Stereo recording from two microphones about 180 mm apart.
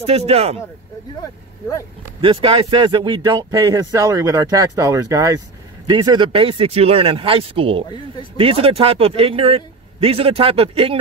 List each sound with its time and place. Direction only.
0.0 s speech: 35° right (ahead or behind)
1.2 s speech: 15° left (ahead or behind)
2.2 s speech: 30° right (ahead or behind)